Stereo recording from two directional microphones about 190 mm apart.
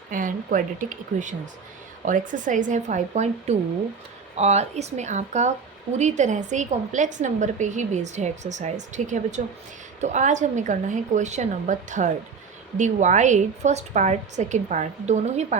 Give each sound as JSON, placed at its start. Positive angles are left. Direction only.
{"t": 0.1, "sound": "a woman's voice", "side_deg": -45}